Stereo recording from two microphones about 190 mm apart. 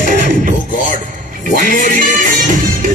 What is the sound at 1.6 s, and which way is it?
Music, 45° right (ahead or behind).